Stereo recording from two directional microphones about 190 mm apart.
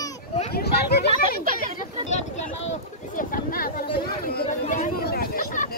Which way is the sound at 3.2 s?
50° left (ahead or behind).